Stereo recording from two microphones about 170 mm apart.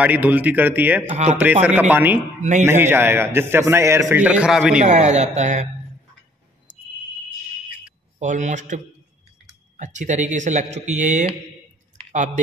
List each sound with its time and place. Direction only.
0.0 s a man's voice: 10° right (ahead or behind)
1.0 s a man's voice: 40° right (ahead or behind)
1.4 s a man's voice: 10° right (ahead or behind)
4.8 s speech: 45° right (ahead or behind)
8.2 s speech: 45° right (ahead or behind)